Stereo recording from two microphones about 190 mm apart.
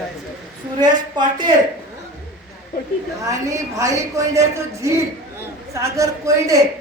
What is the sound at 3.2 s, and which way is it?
A woman's voice, 15° right (ahead or behind).